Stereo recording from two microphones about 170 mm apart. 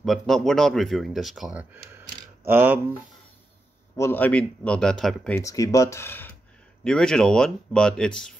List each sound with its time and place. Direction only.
0.0 s speech: centre (ahead or behind)
3.9 s speech: 15° left (ahead or behind)
5.4 s speech: 20° left (ahead or behind); by 8.4 s 5° left (ahead or behind)